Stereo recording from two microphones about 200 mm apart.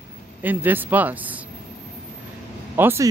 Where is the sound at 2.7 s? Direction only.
10° right (ahead or behind).